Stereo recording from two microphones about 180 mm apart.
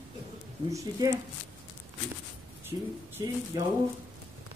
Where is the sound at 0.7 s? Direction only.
15° right (ahead or behind).